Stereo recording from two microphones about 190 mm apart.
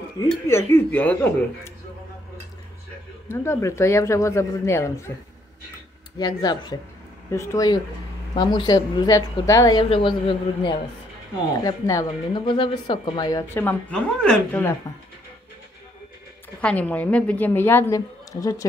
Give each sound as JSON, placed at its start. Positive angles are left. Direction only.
{"t": 0.2, "sound": "speech", "side_deg": 15}
{"t": 3.3, "sound": "speech", "side_deg": 15}
{"t": 6.1, "sound": "speech", "side_deg": 20}
{"t": 16.6, "sound": "speech", "side_deg": 10}